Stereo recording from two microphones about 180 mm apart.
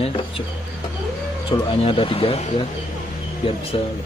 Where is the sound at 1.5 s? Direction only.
20° left (ahead or behind).